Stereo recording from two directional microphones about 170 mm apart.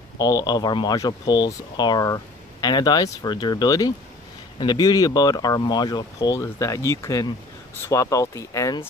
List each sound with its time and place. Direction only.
0.2 s speech: 20° left (ahead or behind)